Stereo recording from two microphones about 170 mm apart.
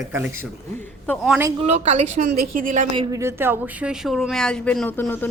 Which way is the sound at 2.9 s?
30° right (ahead or behind).